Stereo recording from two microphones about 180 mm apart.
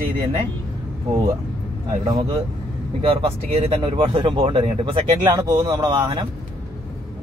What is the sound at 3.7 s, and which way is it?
Speech, 30° right (ahead or behind).